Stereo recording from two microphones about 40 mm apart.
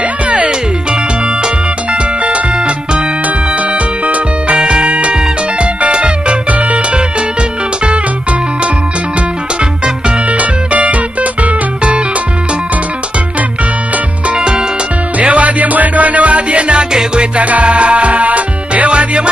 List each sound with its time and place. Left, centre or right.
1.4 s music: right
10.3 s music: right
14.3 s music: right
15.1 s music: right
17.4 s music: right